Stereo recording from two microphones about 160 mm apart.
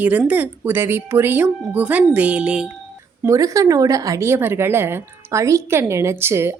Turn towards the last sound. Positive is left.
turn(degrees=-15)  # may be behind; listen again after turning